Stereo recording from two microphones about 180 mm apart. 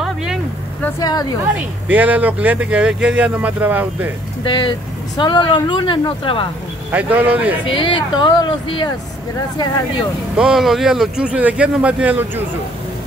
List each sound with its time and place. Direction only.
0.0 s a sound: 5° right (ahead or behind)
0.8 s speech: 20° left (ahead or behind)
1.9 s speech: 10° right (ahead or behind)
4.5 s speech: 25° left (ahead or behind)
6.9 s speech: 10° right (ahead or behind)
7.6 s speech: 30° left (ahead or behind)
10.3 s speech: 5° right (ahead or behind)